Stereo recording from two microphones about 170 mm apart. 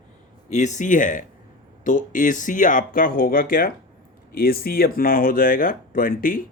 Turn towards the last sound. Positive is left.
turn(degrees=55)  # may be behind; listen again after turning